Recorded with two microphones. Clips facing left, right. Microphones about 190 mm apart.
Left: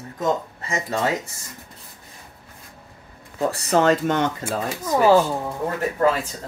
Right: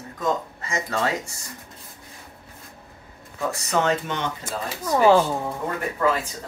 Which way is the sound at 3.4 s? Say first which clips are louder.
Left 5 dB; 35° left (ahead or behind).